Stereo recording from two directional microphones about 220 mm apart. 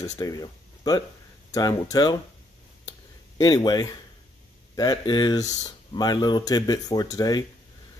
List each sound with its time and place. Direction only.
0.2 s speech: 15° left (ahead or behind)
3.3 s speech: 20° left (ahead or behind)